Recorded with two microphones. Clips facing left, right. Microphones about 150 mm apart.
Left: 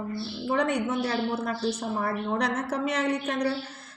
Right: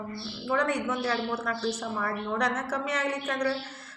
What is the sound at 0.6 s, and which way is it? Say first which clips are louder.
Speech: left 2 dB; 30° left (ahead or behind).